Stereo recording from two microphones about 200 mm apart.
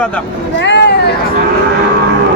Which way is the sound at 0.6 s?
60° left (ahead or behind).